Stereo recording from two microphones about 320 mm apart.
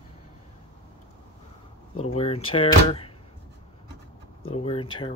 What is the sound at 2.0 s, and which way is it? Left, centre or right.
Speech, centre.